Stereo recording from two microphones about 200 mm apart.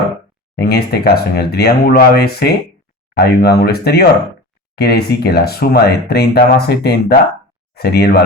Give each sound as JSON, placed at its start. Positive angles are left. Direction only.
{"t": 0.5, "sound": "speech", "side_deg": 50}